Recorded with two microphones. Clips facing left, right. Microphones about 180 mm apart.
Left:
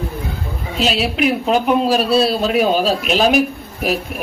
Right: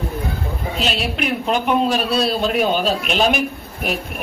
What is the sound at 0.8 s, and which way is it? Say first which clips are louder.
Speech: left 6 dB; centre (ahead or behind).